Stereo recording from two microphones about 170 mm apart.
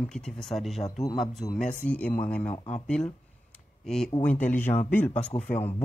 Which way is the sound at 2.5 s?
40° left (ahead or behind).